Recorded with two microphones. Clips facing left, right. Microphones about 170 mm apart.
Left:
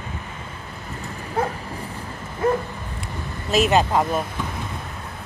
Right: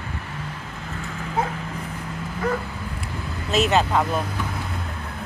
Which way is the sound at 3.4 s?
10° left (ahead or behind).